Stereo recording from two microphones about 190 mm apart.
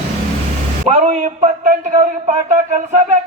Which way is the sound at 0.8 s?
40° right (ahead or behind).